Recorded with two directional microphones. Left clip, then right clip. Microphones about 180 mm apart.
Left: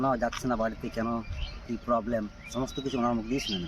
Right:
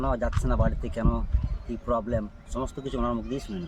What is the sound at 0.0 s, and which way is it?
Speech, 35° right (ahead or behind).